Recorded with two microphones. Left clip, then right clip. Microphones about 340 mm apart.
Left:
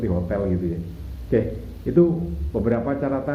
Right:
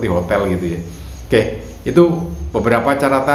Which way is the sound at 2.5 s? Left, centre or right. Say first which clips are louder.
Right 9 dB; right.